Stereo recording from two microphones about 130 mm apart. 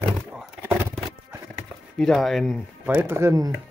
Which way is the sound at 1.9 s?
5° left (ahead or behind).